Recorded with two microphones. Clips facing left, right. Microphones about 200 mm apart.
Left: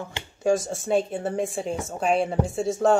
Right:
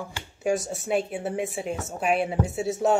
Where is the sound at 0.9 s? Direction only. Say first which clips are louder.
Left 3 dB; 10° right (ahead or behind).